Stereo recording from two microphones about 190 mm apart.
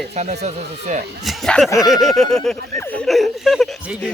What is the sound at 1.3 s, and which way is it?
Speech, centre (ahead or behind).